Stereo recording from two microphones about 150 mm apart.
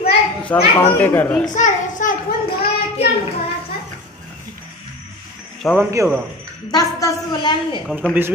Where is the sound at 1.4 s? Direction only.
55° left (ahead or behind).